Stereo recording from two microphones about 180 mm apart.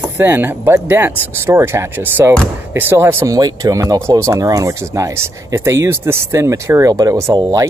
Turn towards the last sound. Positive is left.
turn(degrees=-20)  # may be behind; listen again after turning